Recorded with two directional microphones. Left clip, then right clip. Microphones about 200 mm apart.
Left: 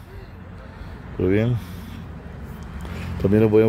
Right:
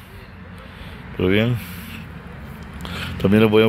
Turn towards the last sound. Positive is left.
turn(degrees=0)  # may be behind; listen again after turning